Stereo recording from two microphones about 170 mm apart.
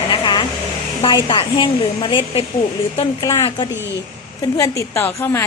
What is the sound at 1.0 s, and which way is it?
A woman's voice, 25° left (ahead or behind).